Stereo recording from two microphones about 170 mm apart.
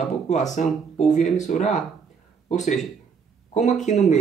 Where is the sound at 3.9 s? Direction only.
45° left (ahead or behind).